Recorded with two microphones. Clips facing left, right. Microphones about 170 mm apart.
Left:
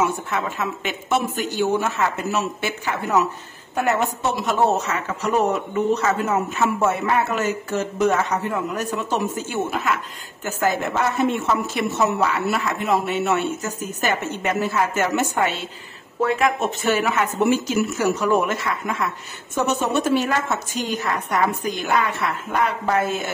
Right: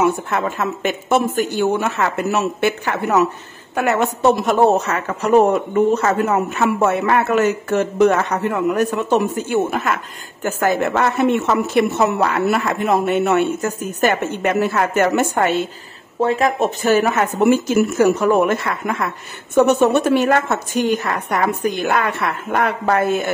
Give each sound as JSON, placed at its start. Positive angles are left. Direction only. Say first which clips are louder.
{"t": 0.0, "sound": "speech", "louder": "right 5 dB", "side_deg": -50}
{"t": 2.3, "sound": "a woman's voice", "louder": "right 6 dB", "side_deg": -60}
{"t": 16.2, "sound": "a woman's voice", "louder": "right 3 dB", "side_deg": -35}